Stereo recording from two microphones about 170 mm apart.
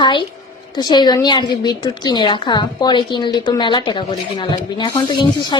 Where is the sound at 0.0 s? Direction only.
25° left (ahead or behind).